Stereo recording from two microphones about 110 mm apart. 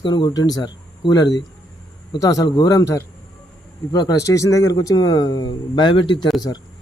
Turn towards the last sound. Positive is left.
turn(degrees=45)  # may be behind; listen again after turning